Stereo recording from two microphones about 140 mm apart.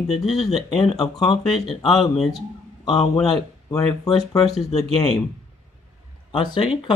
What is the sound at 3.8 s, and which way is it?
Speech, 5° left (ahead or behind).